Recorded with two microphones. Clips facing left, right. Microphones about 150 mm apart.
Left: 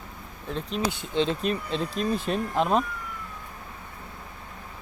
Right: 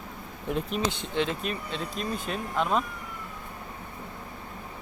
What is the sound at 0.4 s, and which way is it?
Speech, 10° right (ahead or behind).